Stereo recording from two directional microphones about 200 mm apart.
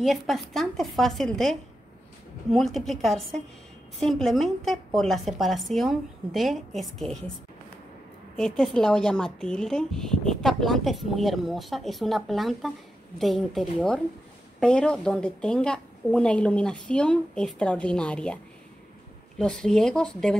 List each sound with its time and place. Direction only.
0.0 s speech: centre (ahead or behind)
8.4 s speech: 5° left (ahead or behind)